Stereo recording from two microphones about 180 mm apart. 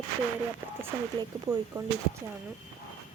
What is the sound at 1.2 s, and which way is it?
Speech, 20° right (ahead or behind).